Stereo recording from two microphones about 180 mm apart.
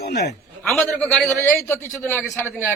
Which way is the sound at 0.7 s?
5° left (ahead or behind).